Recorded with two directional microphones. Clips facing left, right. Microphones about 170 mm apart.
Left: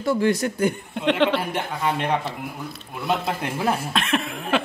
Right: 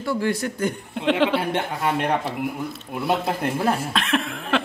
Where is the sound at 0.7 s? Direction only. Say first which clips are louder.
Right 2 dB; 5° right (ahead or behind).